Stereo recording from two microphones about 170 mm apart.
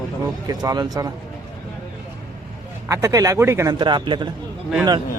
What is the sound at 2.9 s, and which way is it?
Speech, 20° right (ahead or behind).